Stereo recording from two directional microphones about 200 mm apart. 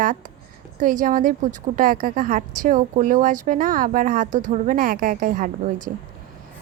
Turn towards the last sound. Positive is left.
turn(degrees=-40)  # may be behind; listen again after turning